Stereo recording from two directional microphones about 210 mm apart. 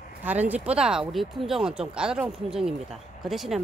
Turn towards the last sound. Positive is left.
turn(degrees=0)  # may be behind; listen again after turning